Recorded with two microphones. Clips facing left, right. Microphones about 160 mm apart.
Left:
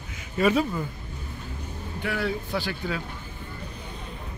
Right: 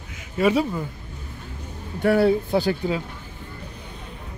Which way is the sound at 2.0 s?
35° right (ahead or behind).